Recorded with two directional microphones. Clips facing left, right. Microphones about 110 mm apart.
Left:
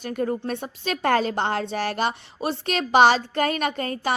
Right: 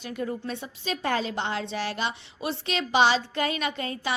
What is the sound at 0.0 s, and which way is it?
A woman's voice, 50° left (ahead or behind).